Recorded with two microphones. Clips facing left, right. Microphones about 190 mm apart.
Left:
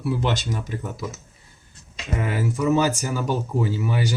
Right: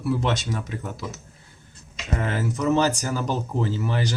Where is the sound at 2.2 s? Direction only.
5° left (ahead or behind).